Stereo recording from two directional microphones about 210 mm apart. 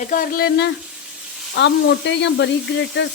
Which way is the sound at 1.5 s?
55° left (ahead or behind).